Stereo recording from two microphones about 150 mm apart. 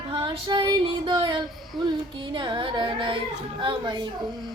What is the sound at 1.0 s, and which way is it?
A woman's voice, 35° right (ahead or behind).